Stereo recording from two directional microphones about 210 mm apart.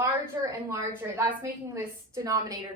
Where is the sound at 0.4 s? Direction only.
15° right (ahead or behind).